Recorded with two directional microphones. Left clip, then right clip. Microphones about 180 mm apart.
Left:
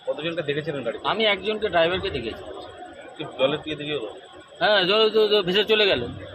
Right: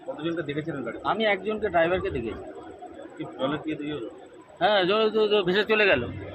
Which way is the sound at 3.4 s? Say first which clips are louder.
Left 5 dB; 55° left (ahead or behind).